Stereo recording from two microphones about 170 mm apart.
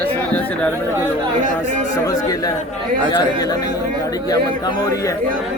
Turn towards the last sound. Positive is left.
turn(degrees=20)  # may be behind; listen again after turning